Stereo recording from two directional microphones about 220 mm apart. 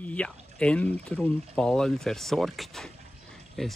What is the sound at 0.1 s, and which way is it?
Speech, 5° left (ahead or behind).